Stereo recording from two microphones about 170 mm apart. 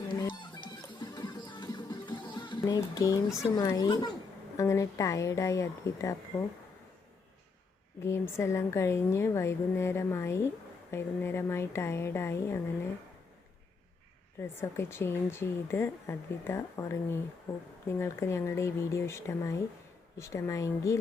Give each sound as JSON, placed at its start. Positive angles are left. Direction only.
{"t": 0.2, "sound": "music", "side_deg": 25}
{"t": 3.4, "sound": "speech", "side_deg": 25}
{"t": 8.0, "sound": "speech", "side_deg": 15}
{"t": 14.6, "sound": "speech", "side_deg": 15}